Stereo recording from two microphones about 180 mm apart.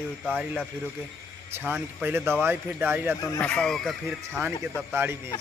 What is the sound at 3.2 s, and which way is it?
Speech, 10° left (ahead or behind).